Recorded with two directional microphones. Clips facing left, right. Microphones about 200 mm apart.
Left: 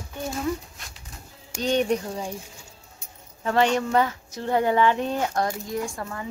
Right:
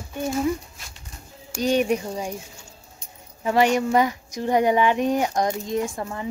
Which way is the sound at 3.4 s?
10° right (ahead or behind).